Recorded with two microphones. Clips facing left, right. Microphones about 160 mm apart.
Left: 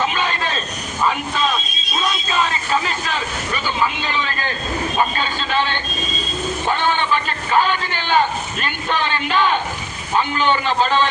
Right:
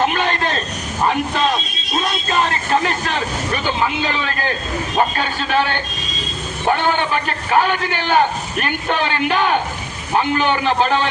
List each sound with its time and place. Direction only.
0.0 s a sound: 55° right (ahead or behind)
1.0 s a man's voice: 50° right (ahead or behind)
4.9 s a man's voice: 55° right (ahead or behind)